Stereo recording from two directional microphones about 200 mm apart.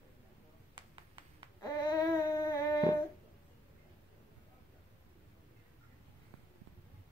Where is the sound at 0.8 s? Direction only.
25° right (ahead or behind).